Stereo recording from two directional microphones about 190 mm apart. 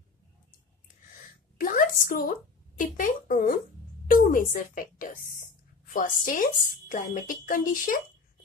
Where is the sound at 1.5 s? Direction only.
45° left (ahead or behind).